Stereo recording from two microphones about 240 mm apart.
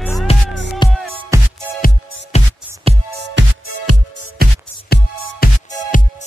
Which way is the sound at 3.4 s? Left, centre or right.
Right.